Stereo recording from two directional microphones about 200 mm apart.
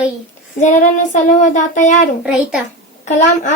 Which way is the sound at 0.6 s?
40° left (ahead or behind).